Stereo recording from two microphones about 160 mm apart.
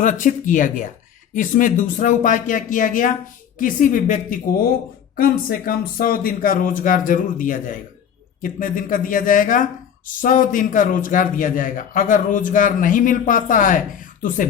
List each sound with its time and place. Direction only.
0.0 s a man's voice: 55° left (ahead or behind)